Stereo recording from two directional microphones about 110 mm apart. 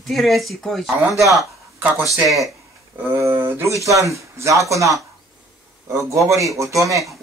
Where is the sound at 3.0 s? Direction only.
25° right (ahead or behind).